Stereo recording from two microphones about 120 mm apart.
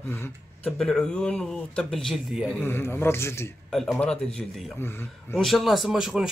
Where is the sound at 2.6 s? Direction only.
15° left (ahead or behind).